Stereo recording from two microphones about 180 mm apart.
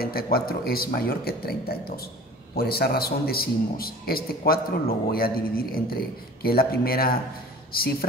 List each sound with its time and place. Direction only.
0.0 s a man's voice: 55° left (ahead or behind)